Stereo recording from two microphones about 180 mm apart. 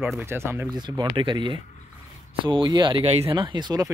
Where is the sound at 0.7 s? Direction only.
25° right (ahead or behind).